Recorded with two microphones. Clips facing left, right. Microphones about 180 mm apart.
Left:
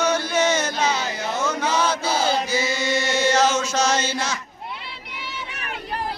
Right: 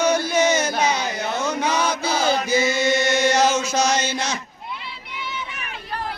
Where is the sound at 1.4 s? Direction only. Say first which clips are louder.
Even; 15° right (ahead or behind).